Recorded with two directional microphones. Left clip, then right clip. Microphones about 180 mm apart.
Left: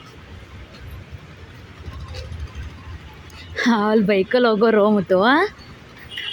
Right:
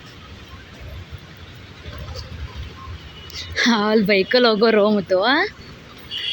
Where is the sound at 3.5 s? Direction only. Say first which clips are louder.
Right 1 dB; 10° left (ahead or behind).